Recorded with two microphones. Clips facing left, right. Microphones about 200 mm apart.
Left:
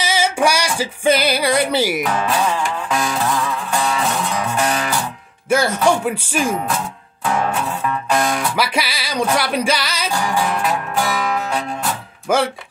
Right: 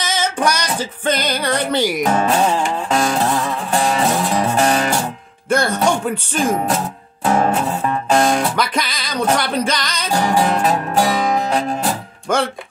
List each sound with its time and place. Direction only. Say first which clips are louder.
0.0 s a sound: left 2 dB; 10° left (ahead or behind)
0.7 s music: left 4 dB; 10° left (ahead or behind)
2.0 s music: right 3 dB; 40° right (ahead or behind)
5.5 s music: left 1 dB; 5° left (ahead or behind)
7.2 s music: right 4 dB; 40° right (ahead or behind)
8.5 s music: even; 5° left (ahead or behind)
10.1 s music: right 5 dB; 35° right (ahead or behind)
12.3 s music: left 1 dB; 5° left (ahead or behind)